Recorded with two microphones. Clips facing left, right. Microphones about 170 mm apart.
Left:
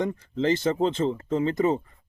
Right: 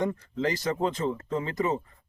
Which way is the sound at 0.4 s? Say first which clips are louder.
Left 5 dB; 25° left (ahead or behind).